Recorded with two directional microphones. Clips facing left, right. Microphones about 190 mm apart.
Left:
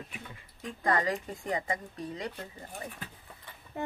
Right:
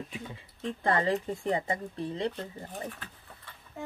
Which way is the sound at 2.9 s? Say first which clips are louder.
Left 2 dB; 10° left (ahead or behind).